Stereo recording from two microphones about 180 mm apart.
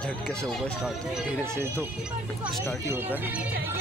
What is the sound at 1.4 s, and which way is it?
Speech, 15° right (ahead or behind).